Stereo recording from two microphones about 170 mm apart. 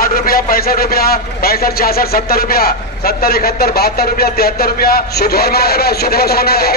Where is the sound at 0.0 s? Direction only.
60° left (ahead or behind).